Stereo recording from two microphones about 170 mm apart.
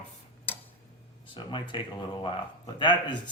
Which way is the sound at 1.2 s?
30° left (ahead or behind).